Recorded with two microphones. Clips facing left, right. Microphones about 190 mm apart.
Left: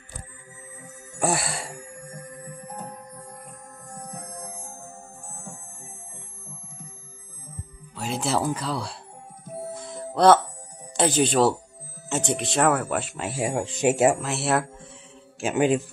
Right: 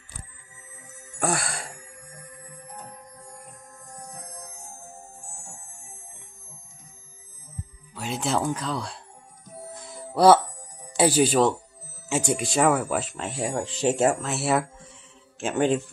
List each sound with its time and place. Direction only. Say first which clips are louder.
1.2 s music: left 2 dB; 5° left (ahead or behind)
2.0 s music: left 6 dB; 45° left (ahead or behind)
7.9 s speech: left 1 dB; centre (ahead or behind)
9.8 s music: right 1 dB; centre (ahead or behind)
11.0 s speech: right 1 dB; 10° right (ahead or behind)
15.4 s music: left 1 dB; 5° left (ahead or behind)